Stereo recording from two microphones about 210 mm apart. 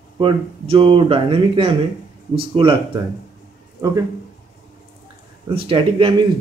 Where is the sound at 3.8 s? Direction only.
15° right (ahead or behind).